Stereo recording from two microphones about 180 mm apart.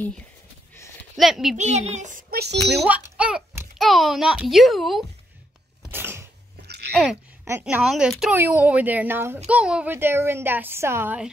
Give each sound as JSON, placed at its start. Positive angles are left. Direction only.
{"t": 1.1, "sound": "speech", "side_deg": 0}
{"t": 1.6, "sound": "a woman's voice", "side_deg": -40}
{"t": 2.3, "sound": "a child's voice", "side_deg": -65}
{"t": 2.8, "sound": "a child's voice", "side_deg": -5}
{"t": 5.9, "sound": "a sound", "side_deg": -10}
{"t": 7.6, "sound": "a woman's voice", "side_deg": -5}